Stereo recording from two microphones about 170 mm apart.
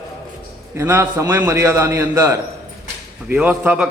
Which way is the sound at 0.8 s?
15° right (ahead or behind).